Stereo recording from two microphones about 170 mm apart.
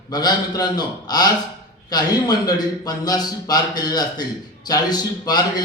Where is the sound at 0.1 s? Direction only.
25° left (ahead or behind).